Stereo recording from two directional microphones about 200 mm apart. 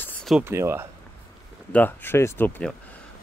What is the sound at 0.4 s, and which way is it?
Speech, 10° right (ahead or behind).